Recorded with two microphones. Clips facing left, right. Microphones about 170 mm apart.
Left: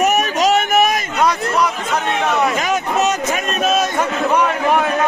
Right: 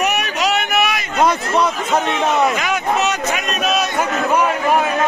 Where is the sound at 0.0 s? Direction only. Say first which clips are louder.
Left 4 dB; 45° left (ahead or behind).